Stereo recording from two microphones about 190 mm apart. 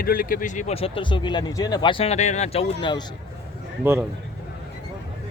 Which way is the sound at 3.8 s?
10° right (ahead or behind).